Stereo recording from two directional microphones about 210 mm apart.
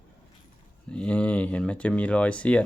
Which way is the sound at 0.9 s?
5° left (ahead or behind).